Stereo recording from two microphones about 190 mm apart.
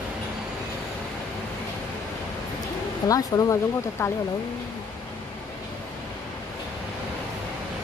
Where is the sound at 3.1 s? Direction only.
15° left (ahead or behind).